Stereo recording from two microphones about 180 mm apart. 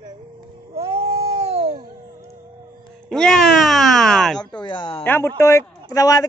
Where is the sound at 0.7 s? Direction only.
35° right (ahead or behind).